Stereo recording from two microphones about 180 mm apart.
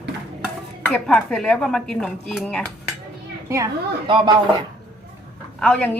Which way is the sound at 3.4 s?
15° right (ahead or behind).